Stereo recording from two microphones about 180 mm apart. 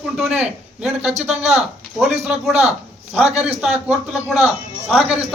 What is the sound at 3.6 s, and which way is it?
Speech, 5° right (ahead or behind).